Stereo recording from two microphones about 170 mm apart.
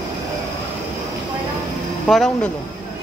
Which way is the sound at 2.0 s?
Centre (ahead or behind).